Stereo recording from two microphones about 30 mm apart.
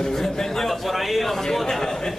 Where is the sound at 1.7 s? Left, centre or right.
Centre.